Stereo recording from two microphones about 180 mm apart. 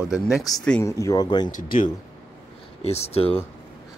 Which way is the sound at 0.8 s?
15° left (ahead or behind).